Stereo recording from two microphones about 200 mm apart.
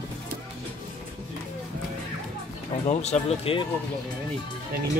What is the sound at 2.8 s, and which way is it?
Speech, 35° left (ahead or behind).